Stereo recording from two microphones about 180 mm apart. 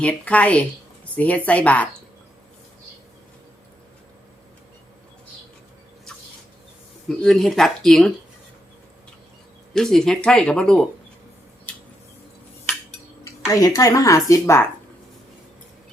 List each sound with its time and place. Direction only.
0.0 s speech: 5° left (ahead or behind)
7.1 s speech: 5° left (ahead or behind)
9.7 s speech: 5° left (ahead or behind)
11.7 s a sound: 10° left (ahead or behind)
13.2 s speech: 20° left (ahead or behind)